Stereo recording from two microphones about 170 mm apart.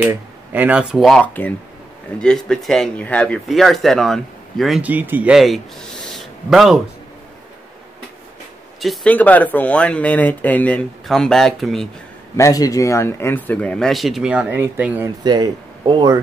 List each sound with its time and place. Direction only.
0.0 s speech: 10° right (ahead or behind)
6.1 s a sound: centre (ahead or behind)
8.8 s speech: 5° left (ahead or behind)
12.4 s speech: 20° left (ahead or behind); by 15.0 s 10° right (ahead or behind)
15.2 s speech: 25° right (ahead or behind)